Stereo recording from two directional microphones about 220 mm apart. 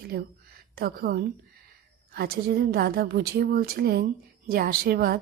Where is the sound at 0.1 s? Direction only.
45° right (ahead or behind).